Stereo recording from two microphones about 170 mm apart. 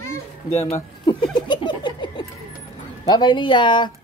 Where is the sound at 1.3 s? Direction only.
25° left (ahead or behind).